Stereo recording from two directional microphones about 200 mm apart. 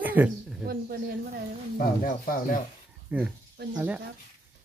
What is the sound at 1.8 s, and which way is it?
Speech, 45° left (ahead or behind).